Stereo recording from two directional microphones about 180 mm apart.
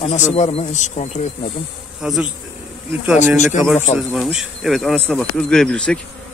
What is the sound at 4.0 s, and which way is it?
Speech, 5° right (ahead or behind).